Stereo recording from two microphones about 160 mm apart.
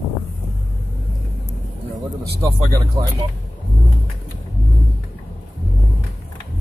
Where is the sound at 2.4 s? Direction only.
30° right (ahead or behind).